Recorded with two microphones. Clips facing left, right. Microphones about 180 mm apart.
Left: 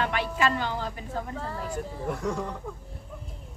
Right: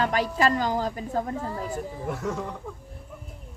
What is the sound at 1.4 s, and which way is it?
Speech, 15° right (ahead or behind).